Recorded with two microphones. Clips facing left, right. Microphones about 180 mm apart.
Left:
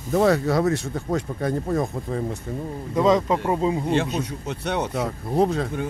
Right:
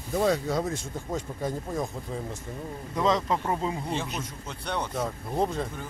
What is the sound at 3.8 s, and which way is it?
Speech, 70° left (ahead or behind).